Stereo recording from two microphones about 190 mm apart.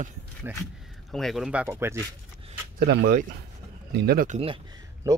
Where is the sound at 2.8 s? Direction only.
60° right (ahead or behind).